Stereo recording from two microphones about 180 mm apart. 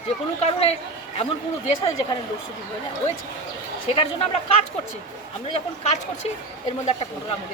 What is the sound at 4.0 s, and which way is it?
Speech, 30° left (ahead or behind).